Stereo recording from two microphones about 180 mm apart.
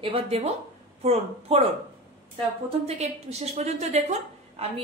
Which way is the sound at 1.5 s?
35° right (ahead or behind).